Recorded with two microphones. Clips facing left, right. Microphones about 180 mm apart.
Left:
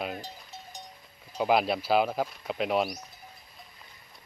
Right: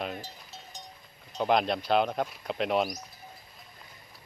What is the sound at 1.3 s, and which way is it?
Speech, 5° left (ahead or behind).